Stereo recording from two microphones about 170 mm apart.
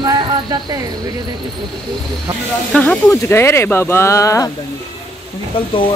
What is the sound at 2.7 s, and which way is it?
Speech, 10° left (ahead or behind).